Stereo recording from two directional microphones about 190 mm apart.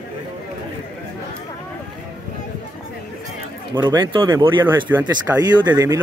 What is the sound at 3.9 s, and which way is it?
Speech, 20° right (ahead or behind).